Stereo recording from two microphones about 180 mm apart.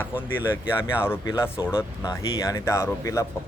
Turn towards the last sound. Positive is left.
turn(degrees=20)  # may be behind; listen again after turning